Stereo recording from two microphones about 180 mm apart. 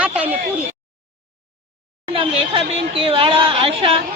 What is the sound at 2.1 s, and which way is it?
Speech, 30° right (ahead or behind).